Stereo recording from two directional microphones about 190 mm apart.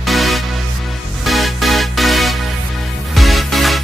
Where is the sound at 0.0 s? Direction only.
Centre (ahead or behind).